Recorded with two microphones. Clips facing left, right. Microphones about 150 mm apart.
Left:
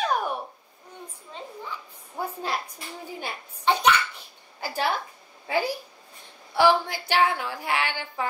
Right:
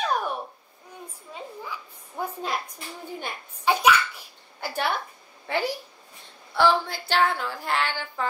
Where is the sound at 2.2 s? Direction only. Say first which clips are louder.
Even; 5° left (ahead or behind).